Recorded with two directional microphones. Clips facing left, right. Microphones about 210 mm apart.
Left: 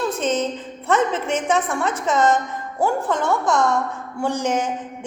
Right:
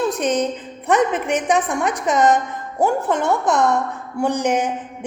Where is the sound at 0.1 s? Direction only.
15° right (ahead or behind).